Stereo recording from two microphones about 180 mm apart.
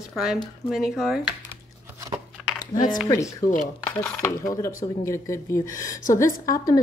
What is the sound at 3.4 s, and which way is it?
Speech, 50° left (ahead or behind).